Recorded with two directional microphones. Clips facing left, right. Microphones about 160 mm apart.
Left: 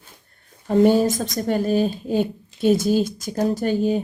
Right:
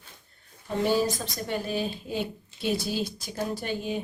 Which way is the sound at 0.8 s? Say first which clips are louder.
Left 9 dB; 50° left (ahead or behind).